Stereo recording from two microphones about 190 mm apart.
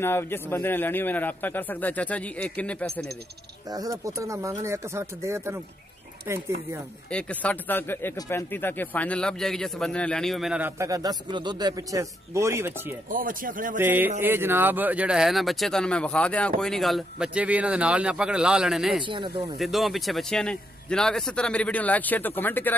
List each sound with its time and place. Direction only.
0.0 s a man's voice: 10° left (ahead or behind)
3.7 s speech: 20° right (ahead or behind)
7.1 s speech: 5° left (ahead or behind); by 12.9 s 15° right (ahead or behind)
13.1 s speech: 45° right (ahead or behind)
13.7 s speech: 10° right (ahead or behind)
19.0 s speech: 25° right (ahead or behind)
19.6 s speech: centre (ahead or behind)